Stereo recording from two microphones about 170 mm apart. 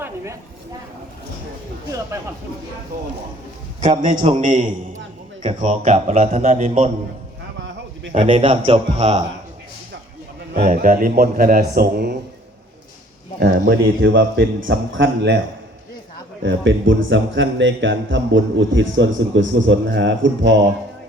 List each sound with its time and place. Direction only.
4.2 s speech: 40° right (ahead or behind)
5.4 s speech: 30° right (ahead or behind)
5.6 s speech: 45° right (ahead or behind)
8.1 s a man's voice: 35° right (ahead or behind)
10.5 s a man's voice: 60° right (ahead or behind)
13.4 s a man's voice: 70° right (ahead or behind); by 15.4 s 90° right
16.4 s a man's voice: 90° right